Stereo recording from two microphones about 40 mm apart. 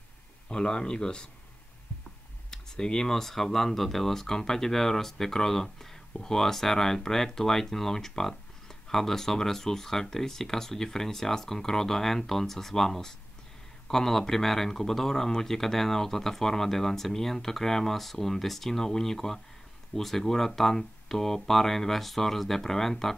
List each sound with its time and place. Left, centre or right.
0.5 s speech: centre
2.5 s speech: centre